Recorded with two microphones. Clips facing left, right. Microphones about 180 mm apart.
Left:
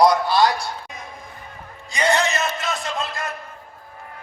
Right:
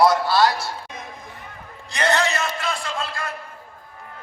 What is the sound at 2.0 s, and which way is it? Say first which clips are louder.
Music: left 1 dB; 15° left (ahead or behind).